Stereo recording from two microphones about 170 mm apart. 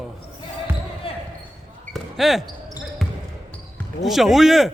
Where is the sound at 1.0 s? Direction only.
35° left (ahead or behind).